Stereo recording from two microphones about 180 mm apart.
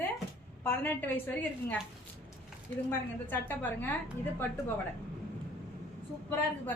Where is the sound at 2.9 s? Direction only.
10° left (ahead or behind).